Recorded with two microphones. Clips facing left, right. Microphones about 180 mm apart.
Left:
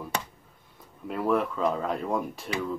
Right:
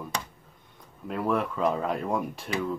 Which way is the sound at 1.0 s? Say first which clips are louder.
Left 1 dB; centre (ahead or behind).